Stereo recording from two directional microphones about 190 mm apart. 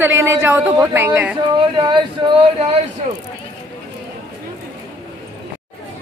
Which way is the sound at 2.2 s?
25° right (ahead or behind).